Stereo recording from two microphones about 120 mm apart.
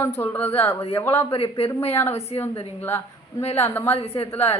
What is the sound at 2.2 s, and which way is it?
Speech, 60° left (ahead or behind).